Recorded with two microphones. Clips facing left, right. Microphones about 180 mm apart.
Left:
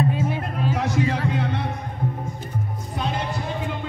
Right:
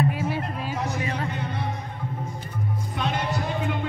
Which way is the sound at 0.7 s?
90° left.